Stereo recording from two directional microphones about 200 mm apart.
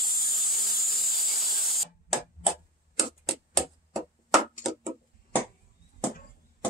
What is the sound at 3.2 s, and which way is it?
Tick-tock, centre (ahead or behind).